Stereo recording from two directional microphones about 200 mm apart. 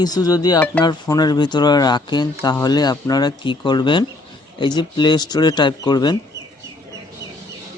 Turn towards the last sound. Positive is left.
turn(degrees=20)  # may be behind; listen again after turning